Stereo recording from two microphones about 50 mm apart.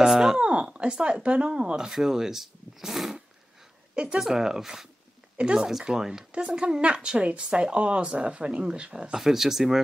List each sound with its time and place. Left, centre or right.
0.0 s a sound: centre
0.4 s speech: right
3.9 s speech: right
4.2 s speech: centre
9.1 s speech: centre